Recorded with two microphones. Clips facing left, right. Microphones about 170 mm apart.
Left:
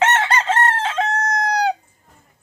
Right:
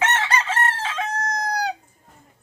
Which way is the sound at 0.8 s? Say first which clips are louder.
Left 5 dB; 25° left (ahead or behind).